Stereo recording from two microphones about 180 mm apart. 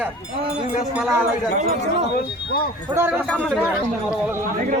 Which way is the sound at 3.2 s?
5° left (ahead or behind).